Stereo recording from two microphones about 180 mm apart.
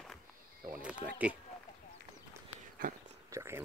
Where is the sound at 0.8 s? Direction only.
5° right (ahead or behind).